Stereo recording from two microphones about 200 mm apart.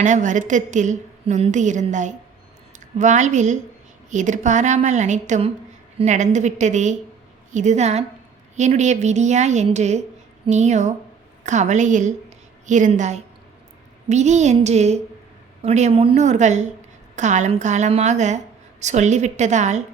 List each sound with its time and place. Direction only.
0.0 s a woman's voice: 40° right (ahead or behind)